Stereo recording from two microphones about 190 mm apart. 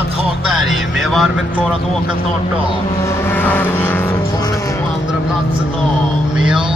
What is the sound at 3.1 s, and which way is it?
Vehicle, 15° left (ahead or behind).